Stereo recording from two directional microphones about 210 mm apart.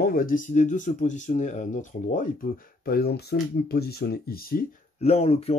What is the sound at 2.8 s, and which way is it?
Speech, 50° left (ahead or behind).